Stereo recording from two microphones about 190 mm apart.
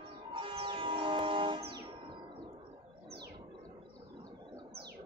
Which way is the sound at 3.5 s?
25° right (ahead or behind).